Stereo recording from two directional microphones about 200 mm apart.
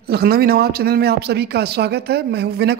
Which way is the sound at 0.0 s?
50° right (ahead or behind).